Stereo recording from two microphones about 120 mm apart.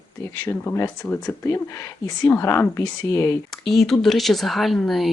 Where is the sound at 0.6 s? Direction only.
15° left (ahead or behind).